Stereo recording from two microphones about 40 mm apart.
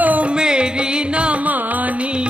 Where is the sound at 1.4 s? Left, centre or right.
Right.